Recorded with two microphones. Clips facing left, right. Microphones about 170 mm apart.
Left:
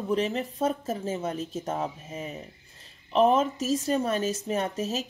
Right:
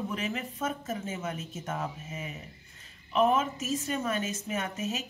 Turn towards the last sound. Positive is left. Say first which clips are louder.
# left 5 dB
turn(degrees=35)  # may be behind; listen again after turning